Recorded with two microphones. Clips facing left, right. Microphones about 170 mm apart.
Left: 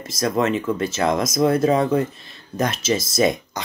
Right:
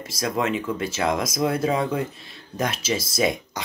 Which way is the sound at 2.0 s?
5° right (ahead or behind).